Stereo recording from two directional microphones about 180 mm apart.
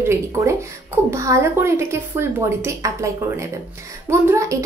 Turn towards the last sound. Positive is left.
turn(degrees=-15)  # may be behind; listen again after turning